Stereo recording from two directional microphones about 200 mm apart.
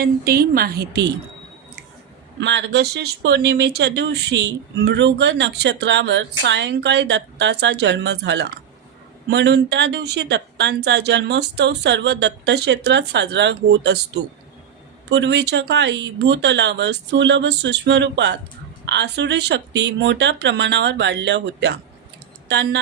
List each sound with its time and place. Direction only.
0.0 s a woman's voice: 50° right (ahead or behind)
2.4 s speech: 60° right (ahead or behind)
15.1 s speech: 60° right (ahead or behind)